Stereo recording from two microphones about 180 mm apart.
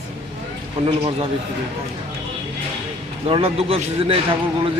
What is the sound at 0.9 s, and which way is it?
Speech, 30° right (ahead or behind).